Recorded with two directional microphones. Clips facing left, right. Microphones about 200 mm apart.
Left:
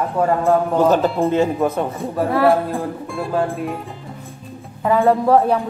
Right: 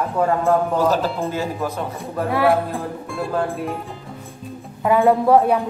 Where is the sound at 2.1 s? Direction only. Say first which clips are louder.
Left 2 dB; centre (ahead or behind).